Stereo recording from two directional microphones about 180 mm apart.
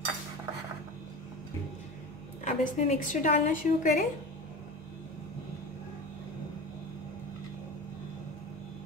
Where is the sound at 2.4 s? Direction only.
45° left (ahead or behind).